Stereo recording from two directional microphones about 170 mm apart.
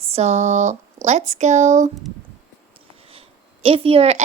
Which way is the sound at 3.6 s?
35° right (ahead or behind).